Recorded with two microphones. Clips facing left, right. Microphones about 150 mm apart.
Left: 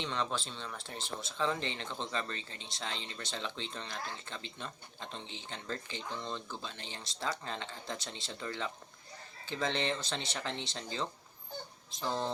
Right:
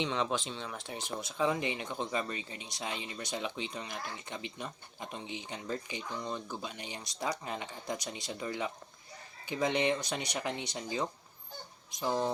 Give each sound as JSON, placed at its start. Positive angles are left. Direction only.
{"t": 0.0, "sound": "speech", "side_deg": -10}